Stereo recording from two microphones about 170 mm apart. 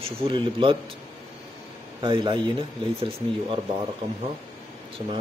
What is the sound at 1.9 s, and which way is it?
Speech, 30° right (ahead or behind).